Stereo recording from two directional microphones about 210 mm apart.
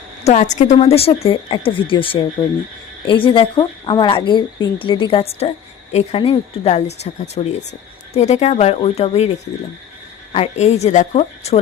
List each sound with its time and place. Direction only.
0.3 s a woman's voice: 35° left (ahead or behind)
10.3 s a woman's voice: 30° left (ahead or behind)